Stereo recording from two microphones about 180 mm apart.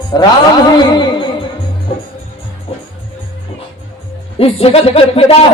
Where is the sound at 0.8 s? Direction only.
25° left (ahead or behind).